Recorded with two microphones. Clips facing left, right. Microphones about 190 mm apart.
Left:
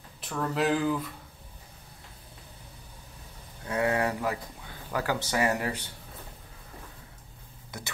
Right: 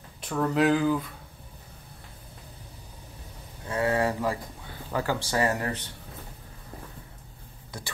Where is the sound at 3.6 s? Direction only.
15° left (ahead or behind).